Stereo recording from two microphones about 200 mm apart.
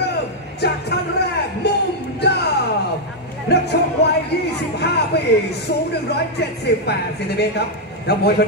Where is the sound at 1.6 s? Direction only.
55° left (ahead or behind).